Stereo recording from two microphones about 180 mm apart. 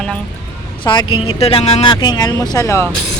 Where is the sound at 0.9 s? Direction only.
30° left (ahead or behind).